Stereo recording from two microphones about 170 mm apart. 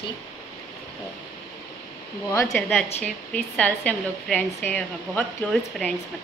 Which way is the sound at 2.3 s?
20° left (ahead or behind).